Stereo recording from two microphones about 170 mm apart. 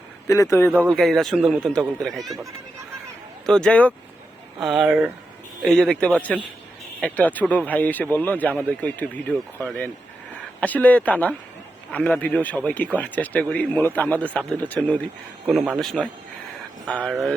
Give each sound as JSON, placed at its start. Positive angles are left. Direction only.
{"t": 0.3, "sound": "a man's voice", "side_deg": 20}
{"t": 0.8, "sound": "speech", "side_deg": 0}
{"t": 3.4, "sound": "a man's voice", "side_deg": 5}
{"t": 4.6, "sound": "speech", "side_deg": -5}
{"t": 5.6, "sound": "a man's voice", "side_deg": 5}